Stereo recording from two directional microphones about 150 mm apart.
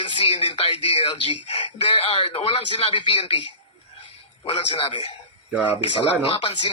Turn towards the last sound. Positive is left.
turn(degrees=35)  # may be behind; listen again after turning